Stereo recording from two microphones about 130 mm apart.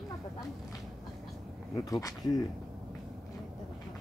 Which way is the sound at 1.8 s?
25° left (ahead or behind).